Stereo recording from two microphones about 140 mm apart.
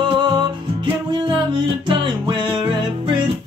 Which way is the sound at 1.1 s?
35° right (ahead or behind).